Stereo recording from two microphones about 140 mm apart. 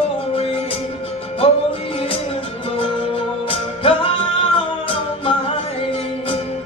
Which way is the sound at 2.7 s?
40° left (ahead or behind).